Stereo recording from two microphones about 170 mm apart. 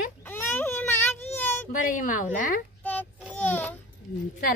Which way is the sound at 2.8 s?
10° left (ahead or behind).